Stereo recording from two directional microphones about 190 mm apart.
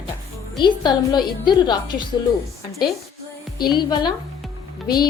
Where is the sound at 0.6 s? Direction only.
25° left (ahead or behind).